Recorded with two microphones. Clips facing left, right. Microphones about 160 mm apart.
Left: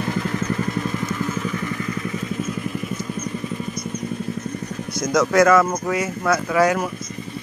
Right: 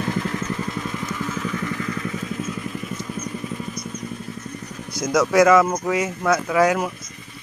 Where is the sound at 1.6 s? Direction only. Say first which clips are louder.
Even; 20° left (ahead or behind).